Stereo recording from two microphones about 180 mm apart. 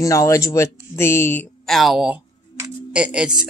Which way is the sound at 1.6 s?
Centre (ahead or behind).